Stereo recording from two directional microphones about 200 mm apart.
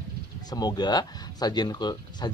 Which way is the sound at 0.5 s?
20° left (ahead or behind).